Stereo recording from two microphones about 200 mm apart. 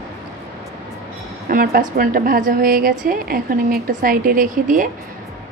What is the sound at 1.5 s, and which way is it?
A woman's voice, 45° right (ahead or behind).